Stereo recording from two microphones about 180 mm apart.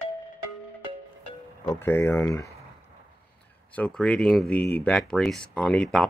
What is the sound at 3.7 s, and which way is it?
Speech, 5° left (ahead or behind).